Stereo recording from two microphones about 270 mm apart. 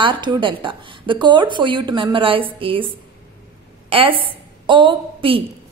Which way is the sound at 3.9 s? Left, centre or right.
Centre.